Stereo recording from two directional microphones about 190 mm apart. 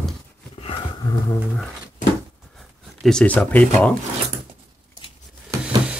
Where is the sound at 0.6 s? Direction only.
25° left (ahead or behind).